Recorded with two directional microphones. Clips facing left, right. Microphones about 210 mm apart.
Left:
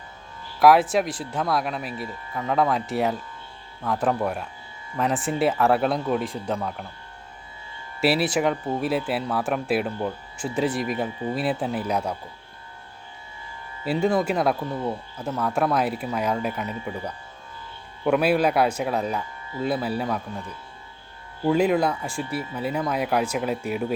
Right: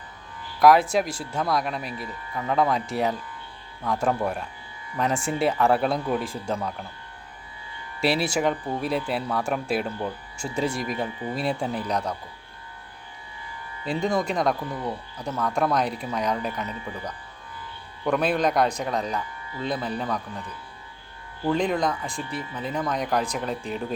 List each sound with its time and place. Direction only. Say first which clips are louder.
0.6 s speech: left 1 dB; centre (ahead or behind)
8.0 s speech: left 2 dB; 5° left (ahead or behind)
13.8 s speech: left 3 dB; 5° left (ahead or behind)
14.6 s speech: left 3 dB; 25° left (ahead or behind)
15.2 s speech: left 1 dB; 5° left (ahead or behind)
18.0 s speech: left 3 dB; 5° left (ahead or behind)
21.4 s speech: left 3 dB; 10° left (ahead or behind)